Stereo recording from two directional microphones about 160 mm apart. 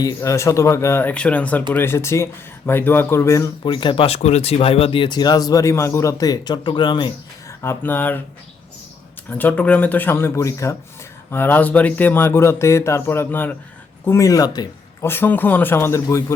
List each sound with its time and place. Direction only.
0.0 s speech: 20° left (ahead or behind)
7.6 s speech: 15° left (ahead or behind)
9.3 s speech: 10° left (ahead or behind)
15.1 s speech: 10° left (ahead or behind)